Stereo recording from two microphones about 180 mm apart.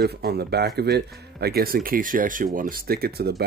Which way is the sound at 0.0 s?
60° right (ahead or behind).